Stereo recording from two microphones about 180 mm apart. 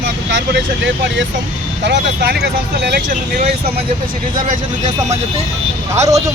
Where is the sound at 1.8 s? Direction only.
70° right (ahead or behind).